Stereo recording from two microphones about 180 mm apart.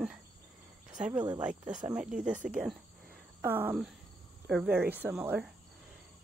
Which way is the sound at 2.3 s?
45° right (ahead or behind).